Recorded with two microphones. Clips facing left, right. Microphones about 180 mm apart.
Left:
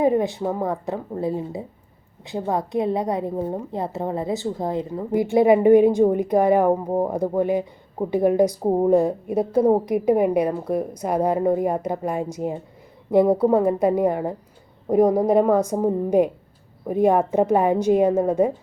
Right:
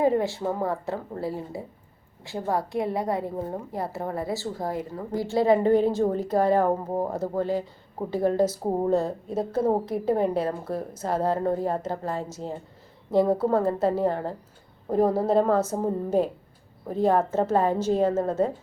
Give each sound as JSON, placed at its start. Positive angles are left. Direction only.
{"t": 0.0, "sound": "a woman's voice", "side_deg": 20}